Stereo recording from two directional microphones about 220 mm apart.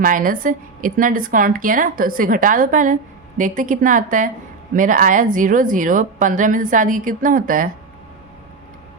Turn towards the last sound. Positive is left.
turn(degrees=-35)  # may be behind; listen again after turning